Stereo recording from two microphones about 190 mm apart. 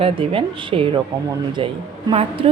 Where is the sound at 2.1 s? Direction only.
30° right (ahead or behind).